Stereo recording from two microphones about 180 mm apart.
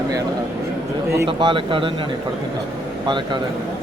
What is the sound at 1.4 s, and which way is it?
Speech, 25° right (ahead or behind).